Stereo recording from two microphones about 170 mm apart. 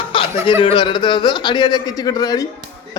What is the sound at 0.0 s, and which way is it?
Chuckle, 30° left (ahead or behind).